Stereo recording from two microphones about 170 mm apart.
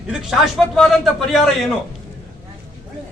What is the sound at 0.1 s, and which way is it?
A man's voice, 5° right (ahead or behind).